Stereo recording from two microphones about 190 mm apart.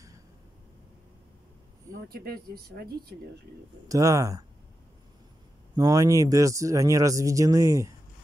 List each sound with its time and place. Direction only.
1.9 s speech: 55° right (ahead or behind)
3.9 s speech: 15° right (ahead or behind)
5.8 s speech: 15° right (ahead or behind)